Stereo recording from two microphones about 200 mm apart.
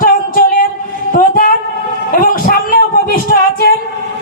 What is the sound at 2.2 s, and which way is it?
Speech, 45° left (ahead or behind).